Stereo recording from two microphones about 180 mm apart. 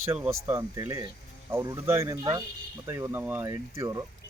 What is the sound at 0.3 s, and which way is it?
Speech, 15° right (ahead or behind).